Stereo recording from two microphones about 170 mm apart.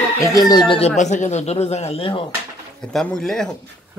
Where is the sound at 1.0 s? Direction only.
45° left (ahead or behind).